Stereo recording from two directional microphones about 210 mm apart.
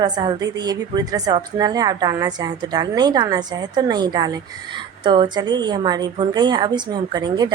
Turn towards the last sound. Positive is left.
turn(degrees=-20)  # may be behind; listen again after turning